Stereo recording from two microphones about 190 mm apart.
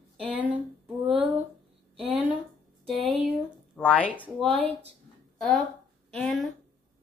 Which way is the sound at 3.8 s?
5° left (ahead or behind).